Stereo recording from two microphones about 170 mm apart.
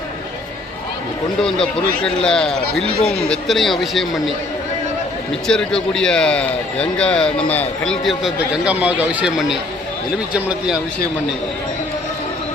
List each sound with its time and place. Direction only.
1.4 s a man's voice: 5° left (ahead or behind)
5.5 s a man's voice: 5° left (ahead or behind)